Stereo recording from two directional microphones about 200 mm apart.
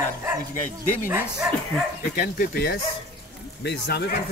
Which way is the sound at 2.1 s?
45° left (ahead or behind).